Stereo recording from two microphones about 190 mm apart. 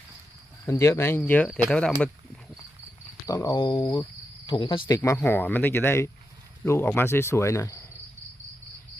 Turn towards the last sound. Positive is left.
turn(degrees=15)  # may be behind; listen again after turning